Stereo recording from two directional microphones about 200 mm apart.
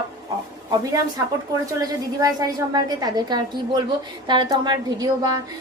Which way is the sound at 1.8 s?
20° right (ahead or behind).